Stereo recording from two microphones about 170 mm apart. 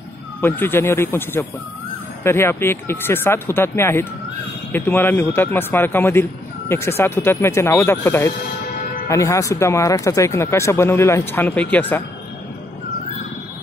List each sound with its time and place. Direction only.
0.4 s speech: 10° left (ahead or behind)